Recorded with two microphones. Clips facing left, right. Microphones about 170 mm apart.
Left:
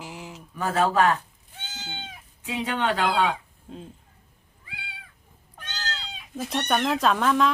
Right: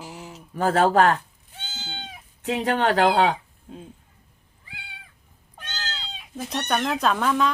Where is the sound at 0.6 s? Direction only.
60° right (ahead or behind).